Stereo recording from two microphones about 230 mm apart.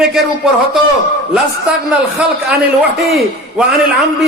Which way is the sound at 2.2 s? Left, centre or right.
Centre.